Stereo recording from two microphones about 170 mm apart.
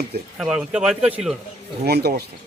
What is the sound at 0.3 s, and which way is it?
Speech, 5° right (ahead or behind).